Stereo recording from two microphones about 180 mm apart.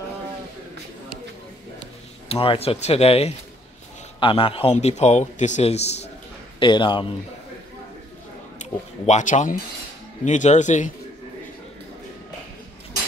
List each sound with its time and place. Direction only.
2.2 s a man's voice: 30° left (ahead or behind)
8.5 s speech: 40° left (ahead or behind)